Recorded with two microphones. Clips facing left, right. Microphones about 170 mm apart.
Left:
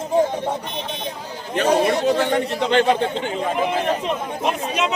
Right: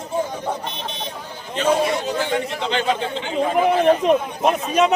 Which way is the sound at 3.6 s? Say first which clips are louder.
Right 6 dB; 50° right (ahead or behind).